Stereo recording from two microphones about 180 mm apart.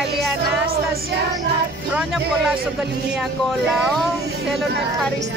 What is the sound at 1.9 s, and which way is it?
Speech, 5° right (ahead or behind).